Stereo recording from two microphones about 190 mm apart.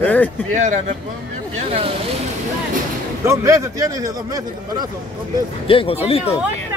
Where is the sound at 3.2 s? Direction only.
15° right (ahead or behind).